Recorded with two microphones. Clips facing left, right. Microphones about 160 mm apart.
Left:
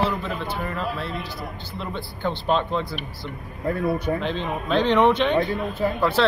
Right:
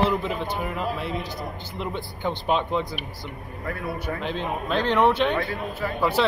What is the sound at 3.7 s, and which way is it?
Speech, 20° left (ahead or behind).